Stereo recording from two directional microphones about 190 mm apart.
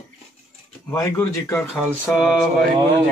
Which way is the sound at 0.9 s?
15° left (ahead or behind).